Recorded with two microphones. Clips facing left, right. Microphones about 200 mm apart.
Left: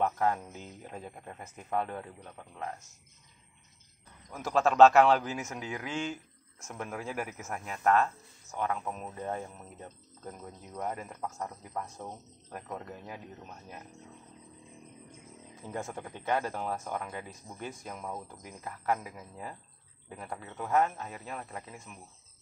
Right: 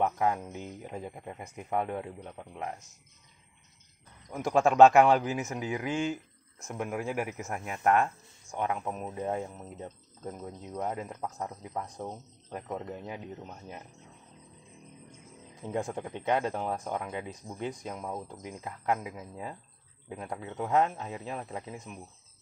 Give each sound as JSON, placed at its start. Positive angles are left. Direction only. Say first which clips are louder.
{"t": 0.0, "sound": "speech", "louder": "right 1 dB", "side_deg": -10}
{"t": 4.3, "sound": "speech", "louder": "right 3 dB", "side_deg": -10}
{"t": 15.6, "sound": "a man's voice", "louder": "right 5 dB", "side_deg": -15}